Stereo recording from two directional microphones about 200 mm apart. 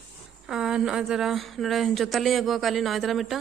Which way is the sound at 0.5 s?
5° right (ahead or behind).